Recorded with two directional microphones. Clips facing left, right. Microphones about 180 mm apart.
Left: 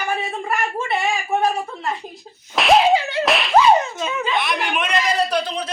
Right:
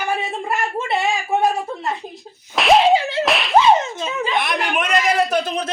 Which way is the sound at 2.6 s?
Centre (ahead or behind).